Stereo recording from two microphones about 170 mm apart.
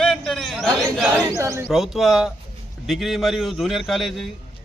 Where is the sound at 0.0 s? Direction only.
Centre (ahead or behind).